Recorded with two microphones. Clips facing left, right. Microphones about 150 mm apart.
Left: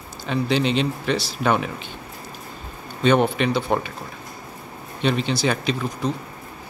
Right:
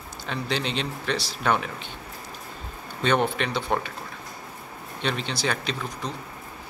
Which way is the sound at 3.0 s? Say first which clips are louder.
Left 5 dB; 5° left (ahead or behind).